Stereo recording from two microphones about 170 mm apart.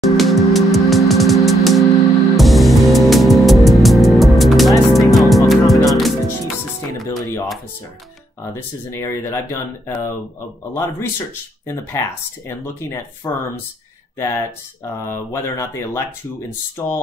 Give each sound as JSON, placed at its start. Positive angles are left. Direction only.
{"t": 0.0, "sound": "music", "side_deg": 0}
{"t": 7.1, "sound": "music", "side_deg": 15}
{"t": 8.9, "sound": "speech", "side_deg": 15}